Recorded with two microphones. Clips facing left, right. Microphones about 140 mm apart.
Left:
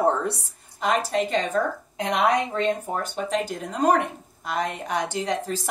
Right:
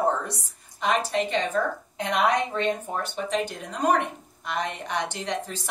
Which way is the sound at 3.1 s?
40° left (ahead or behind).